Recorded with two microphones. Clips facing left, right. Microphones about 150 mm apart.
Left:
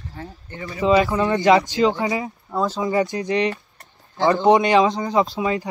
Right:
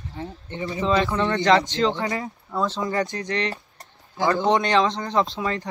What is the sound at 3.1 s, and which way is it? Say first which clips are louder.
Speech: left 5 dB; 20° left (ahead or behind).